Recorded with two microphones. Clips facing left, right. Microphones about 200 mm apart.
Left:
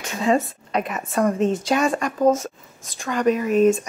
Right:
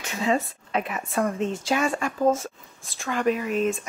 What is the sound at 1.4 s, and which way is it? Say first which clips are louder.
Speech: left 5 dB; 15° left (ahead or behind).